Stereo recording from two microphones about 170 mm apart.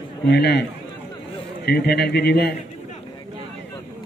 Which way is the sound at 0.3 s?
80° left.